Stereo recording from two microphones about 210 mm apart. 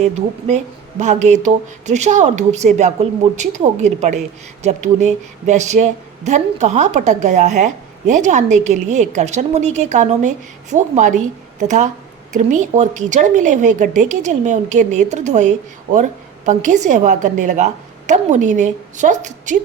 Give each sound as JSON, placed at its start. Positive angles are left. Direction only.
{"t": 0.0, "sound": "speech", "side_deg": -35}
{"t": 12.3, "sound": "speech", "side_deg": -35}